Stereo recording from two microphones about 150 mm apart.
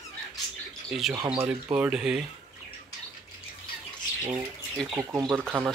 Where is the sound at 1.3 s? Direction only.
10° right (ahead or behind).